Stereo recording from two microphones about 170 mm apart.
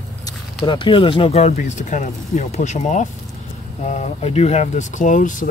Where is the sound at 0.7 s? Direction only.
30° left (ahead or behind).